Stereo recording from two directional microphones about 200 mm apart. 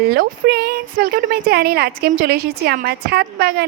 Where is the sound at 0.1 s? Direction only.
50° right (ahead or behind).